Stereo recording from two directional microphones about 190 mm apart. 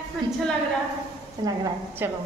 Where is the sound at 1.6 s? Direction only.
10° right (ahead or behind).